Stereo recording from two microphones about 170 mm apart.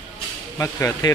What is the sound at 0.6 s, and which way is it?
Speech, 20° left (ahead or behind).